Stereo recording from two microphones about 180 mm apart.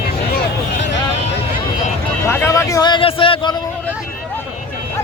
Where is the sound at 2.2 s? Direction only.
15° left (ahead or behind); by 3.5 s 30° left (ahead or behind).